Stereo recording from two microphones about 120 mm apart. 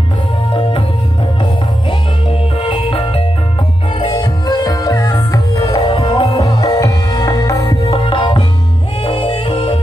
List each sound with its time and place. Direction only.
0.5 s music: 45° left (ahead or behind)
4.0 s music: 40° left (ahead or behind)
5.9 s music: 45° left (ahead or behind)
7.8 s music: 50° left (ahead or behind)